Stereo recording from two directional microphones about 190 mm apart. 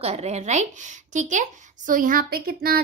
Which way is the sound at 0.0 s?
35° right (ahead or behind).